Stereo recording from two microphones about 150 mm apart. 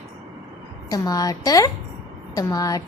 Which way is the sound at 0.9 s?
25° left (ahead or behind).